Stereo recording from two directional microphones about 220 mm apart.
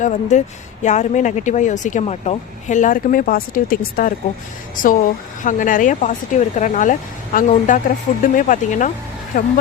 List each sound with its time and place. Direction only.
0.0 s speech: 35° left (ahead or behind)
5.4 s speech: 35° left (ahead or behind)